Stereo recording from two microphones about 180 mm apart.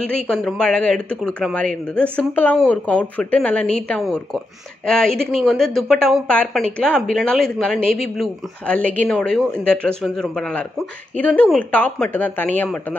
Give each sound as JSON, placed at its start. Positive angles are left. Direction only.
{"t": 0.3, "sound": "a woman's voice", "side_deg": 5}